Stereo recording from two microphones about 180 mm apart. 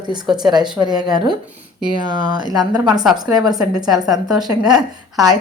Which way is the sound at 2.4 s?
20° right (ahead or behind).